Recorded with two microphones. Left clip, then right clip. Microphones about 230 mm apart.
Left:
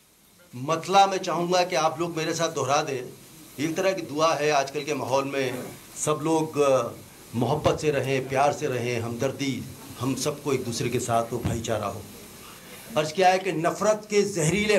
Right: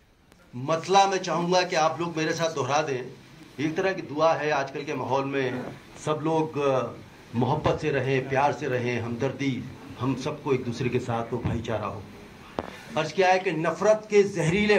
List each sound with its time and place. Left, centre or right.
0.7 s a man's voice: left
12.9 s a man's voice: left